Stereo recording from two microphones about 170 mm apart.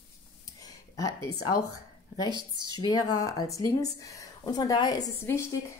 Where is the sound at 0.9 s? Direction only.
20° left (ahead or behind).